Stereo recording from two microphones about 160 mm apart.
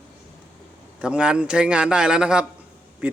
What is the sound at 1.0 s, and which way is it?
A man's voice, 5° right (ahead or behind).